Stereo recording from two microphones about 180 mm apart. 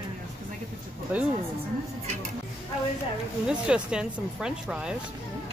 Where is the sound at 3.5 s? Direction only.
5° right (ahead or behind).